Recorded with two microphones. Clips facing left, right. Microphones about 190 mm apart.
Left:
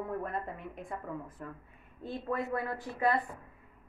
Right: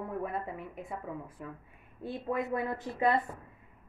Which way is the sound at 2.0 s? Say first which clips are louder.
Right 1 dB; 15° right (ahead or behind).